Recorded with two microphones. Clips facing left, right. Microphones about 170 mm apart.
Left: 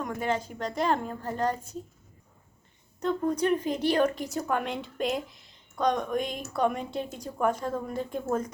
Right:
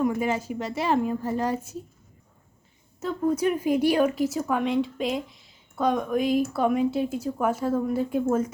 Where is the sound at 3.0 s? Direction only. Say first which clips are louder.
Right 2 dB; 5° right (ahead or behind).